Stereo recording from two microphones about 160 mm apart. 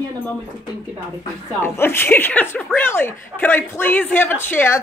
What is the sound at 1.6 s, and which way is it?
A man's voice, 15° left (ahead or behind).